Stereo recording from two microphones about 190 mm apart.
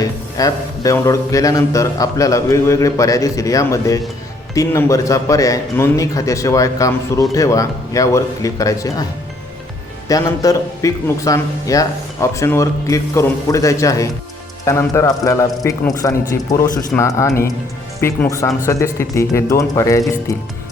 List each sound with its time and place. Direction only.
0.0 s a man's voice: 20° left (ahead or behind)
10.1 s a man's voice: 20° left (ahead or behind)